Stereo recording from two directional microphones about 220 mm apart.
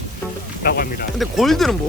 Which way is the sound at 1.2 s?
Centre (ahead or behind).